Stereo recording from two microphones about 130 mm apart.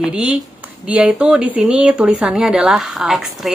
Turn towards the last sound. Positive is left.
turn(degrees=0)  # may be behind; listen again after turning